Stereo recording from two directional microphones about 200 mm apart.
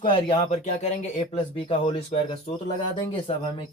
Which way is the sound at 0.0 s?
30° left (ahead or behind).